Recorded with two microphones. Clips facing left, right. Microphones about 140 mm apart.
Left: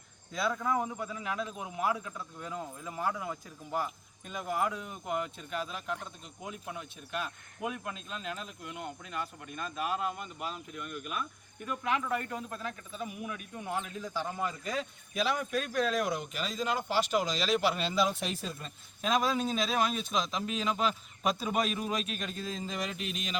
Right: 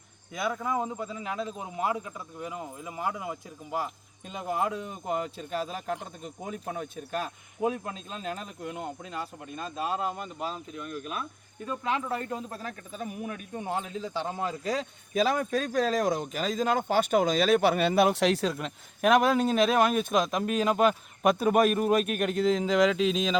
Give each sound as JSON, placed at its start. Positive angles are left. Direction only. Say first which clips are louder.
{"t": 0.3, "sound": "speech", "louder": "right 1 dB", "side_deg": -15}
{"t": 13.6, "sound": "a man's voice", "louder": "right 4 dB", "side_deg": -30}